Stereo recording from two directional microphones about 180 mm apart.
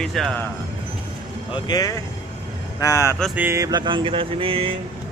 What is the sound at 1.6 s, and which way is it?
Speech, 20° left (ahead or behind).